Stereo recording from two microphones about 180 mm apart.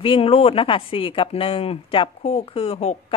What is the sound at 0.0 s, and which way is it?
A woman's voice, 30° left (ahead or behind).